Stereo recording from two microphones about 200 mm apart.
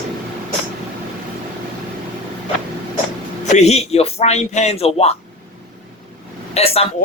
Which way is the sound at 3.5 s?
35° left (ahead or behind).